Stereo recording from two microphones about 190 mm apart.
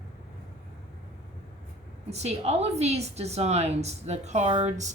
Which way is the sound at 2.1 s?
35° right (ahead or behind).